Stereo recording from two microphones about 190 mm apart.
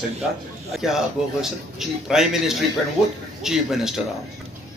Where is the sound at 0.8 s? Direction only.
Centre (ahead or behind).